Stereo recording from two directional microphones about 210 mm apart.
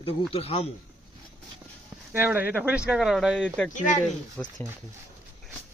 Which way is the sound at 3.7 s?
35° left (ahead or behind).